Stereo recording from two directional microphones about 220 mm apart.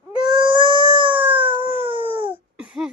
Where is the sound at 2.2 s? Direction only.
25° right (ahead or behind).